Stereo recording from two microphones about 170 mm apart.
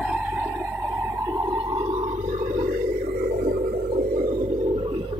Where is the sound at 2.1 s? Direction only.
45° right (ahead or behind).